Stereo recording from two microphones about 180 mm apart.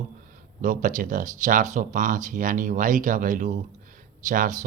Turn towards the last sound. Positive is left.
turn(degrees=-45)  # may be behind; listen again after turning